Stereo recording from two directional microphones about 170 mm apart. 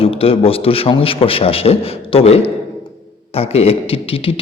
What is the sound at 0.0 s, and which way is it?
Speech, 35° left (ahead or behind).